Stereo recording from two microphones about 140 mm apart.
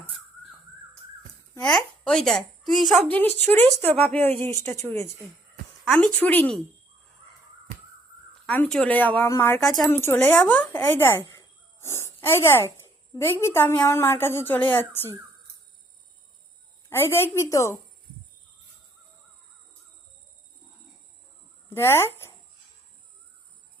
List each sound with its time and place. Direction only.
1.6 s a woman's voice: 5° left (ahead or behind)
8.4 s a woman's voice: 5° left (ahead or behind)
9.6 s speech: centre (ahead or behind)
9.8 s a woman's voice: 15° left (ahead or behind)
11.3 s a sound: 20° left (ahead or behind)
13.1 s a woman's voice: 15° left (ahead or behind)
16.9 s a woman's voice: 15° left (ahead or behind)
21.7 s speech: 15° left (ahead or behind)